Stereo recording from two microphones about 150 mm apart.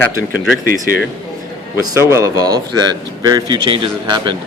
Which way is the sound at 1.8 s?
20° right (ahead or behind).